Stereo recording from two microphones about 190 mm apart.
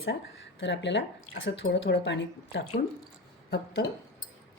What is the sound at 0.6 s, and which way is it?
Speech, 70° left (ahead or behind).